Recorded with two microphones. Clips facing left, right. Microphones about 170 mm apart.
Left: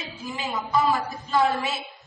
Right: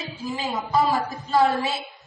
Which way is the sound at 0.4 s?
35° right (ahead or behind).